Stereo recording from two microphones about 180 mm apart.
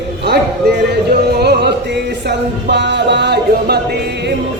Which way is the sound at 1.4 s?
65° right (ahead or behind).